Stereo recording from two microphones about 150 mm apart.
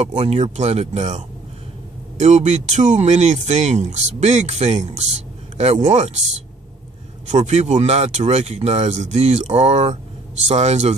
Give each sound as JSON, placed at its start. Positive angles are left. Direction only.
{"t": 0.0, "sound": "speech", "side_deg": -45}
{"t": 7.2, "sound": "speech", "side_deg": -50}